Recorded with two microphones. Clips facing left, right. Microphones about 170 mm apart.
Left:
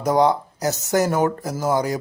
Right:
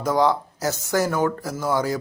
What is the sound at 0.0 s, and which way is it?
Speech, 20° left (ahead or behind).